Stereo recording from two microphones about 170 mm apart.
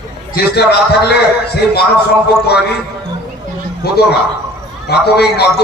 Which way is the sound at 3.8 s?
70° left (ahead or behind).